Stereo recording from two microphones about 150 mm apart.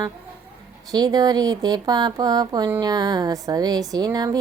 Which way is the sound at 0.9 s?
25° right (ahead or behind).